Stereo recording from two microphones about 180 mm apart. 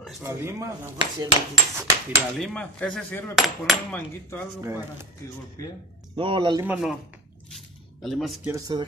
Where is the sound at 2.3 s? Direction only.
Centre (ahead or behind).